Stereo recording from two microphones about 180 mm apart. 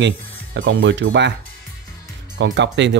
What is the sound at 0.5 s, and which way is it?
Speech, 90° right.